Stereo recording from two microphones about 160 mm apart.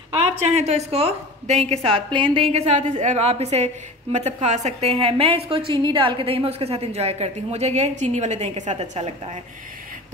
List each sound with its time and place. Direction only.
0.1 s a woman's voice: 40° right (ahead or behind)